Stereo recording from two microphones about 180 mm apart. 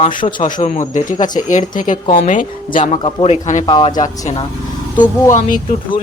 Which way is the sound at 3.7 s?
25° left (ahead or behind).